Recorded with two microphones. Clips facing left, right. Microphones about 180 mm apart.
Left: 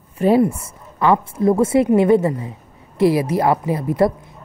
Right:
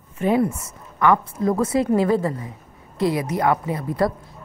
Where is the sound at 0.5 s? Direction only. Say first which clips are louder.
Left 1 dB; 30° left (ahead or behind).